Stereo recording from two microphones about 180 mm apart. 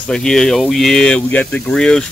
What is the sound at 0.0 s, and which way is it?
Speech, 5° left (ahead or behind).